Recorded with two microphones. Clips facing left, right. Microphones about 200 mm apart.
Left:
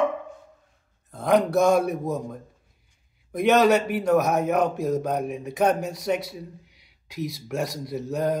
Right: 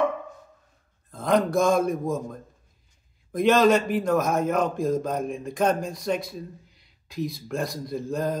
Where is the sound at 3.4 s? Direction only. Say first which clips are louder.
Even; 10° left (ahead or behind).